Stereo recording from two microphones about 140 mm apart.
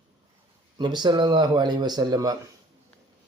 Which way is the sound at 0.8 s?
30° right (ahead or behind).